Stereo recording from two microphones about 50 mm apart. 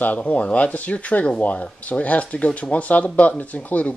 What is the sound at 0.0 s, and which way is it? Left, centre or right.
Speech, left.